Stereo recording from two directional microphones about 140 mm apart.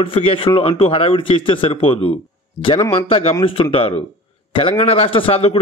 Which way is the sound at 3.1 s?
45° left (ahead or behind).